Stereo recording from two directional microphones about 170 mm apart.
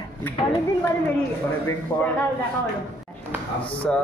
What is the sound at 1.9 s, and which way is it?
Speech, 20° left (ahead or behind).